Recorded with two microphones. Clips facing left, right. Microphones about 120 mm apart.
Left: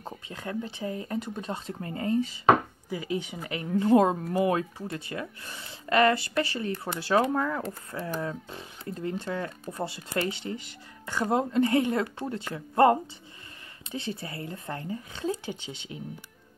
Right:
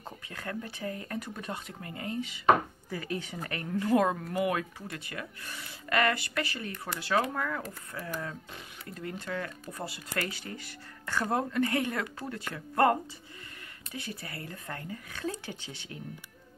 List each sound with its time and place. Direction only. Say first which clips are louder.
0.0 s speech: left 3 dB; 20° left (ahead or behind)
2.9 s speech: left 5 dB; 15° left (ahead or behind)